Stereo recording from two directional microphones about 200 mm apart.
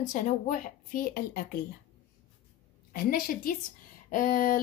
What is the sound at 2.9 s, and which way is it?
A woman's voice, 50° left (ahead or behind).